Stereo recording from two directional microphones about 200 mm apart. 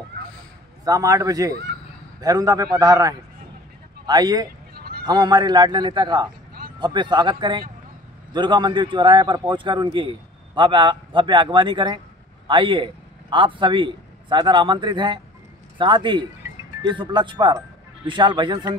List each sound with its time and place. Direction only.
0.8 s a man's voice: 15° right (ahead or behind)
4.7 s a sound: 50° right (ahead or behind)
5.0 s a man's voice: 20° right (ahead or behind)